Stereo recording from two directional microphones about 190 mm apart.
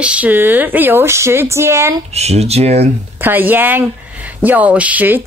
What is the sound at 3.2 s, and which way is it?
A woman's voice, 10° right (ahead or behind).